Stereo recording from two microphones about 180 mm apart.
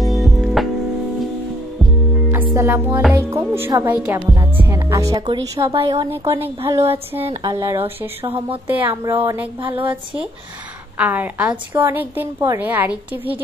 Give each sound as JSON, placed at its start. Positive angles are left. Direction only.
{"t": 0.0, "sound": "music", "side_deg": 0}
{"t": 2.5, "sound": "music", "side_deg": -15}
{"t": 3.0, "sound": "a woman's voice", "side_deg": -10}
{"t": 4.3, "sound": "music", "side_deg": -15}
{"t": 5.7, "sound": "a woman's voice", "side_deg": -25}
{"t": 6.0, "sound": "a woman's voice", "side_deg": -15}
{"t": 8.3, "sound": "a woman's voice", "side_deg": -30}
{"t": 8.6, "sound": "a woman's voice", "side_deg": -10}
{"t": 9.6, "sound": "a woman's voice", "side_deg": -30}
{"t": 11.0, "sound": "a woman's voice", "side_deg": -10}